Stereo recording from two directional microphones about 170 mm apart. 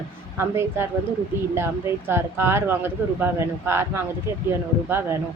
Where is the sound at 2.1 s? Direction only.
15° right (ahead or behind).